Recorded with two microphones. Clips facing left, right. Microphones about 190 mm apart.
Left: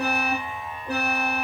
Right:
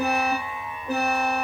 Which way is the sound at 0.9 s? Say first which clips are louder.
Right 3 dB; 30° right (ahead or behind).